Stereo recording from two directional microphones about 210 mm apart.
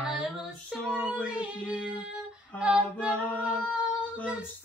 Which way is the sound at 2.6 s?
5° right (ahead or behind).